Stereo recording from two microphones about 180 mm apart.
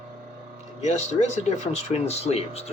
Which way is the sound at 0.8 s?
35° left (ahead or behind).